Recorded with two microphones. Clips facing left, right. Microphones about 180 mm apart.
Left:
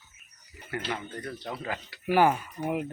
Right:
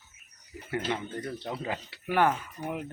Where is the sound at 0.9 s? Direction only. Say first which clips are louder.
Right 2 dB; 20° right (ahead or behind).